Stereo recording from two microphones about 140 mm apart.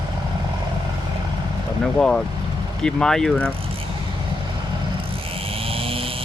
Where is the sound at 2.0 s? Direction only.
5° left (ahead or behind).